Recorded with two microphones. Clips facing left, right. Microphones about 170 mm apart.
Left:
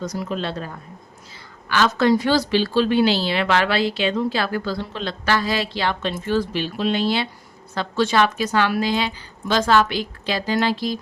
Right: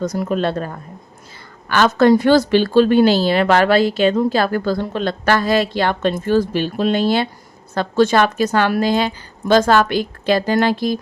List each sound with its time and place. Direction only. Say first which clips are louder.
0.0 s a woman's voice: right 7 dB; 50° right (ahead or behind)